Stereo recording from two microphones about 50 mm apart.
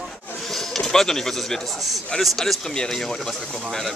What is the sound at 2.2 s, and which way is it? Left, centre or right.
Speech, centre.